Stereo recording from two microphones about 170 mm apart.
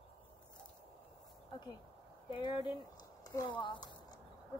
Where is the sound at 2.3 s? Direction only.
30° left (ahead or behind).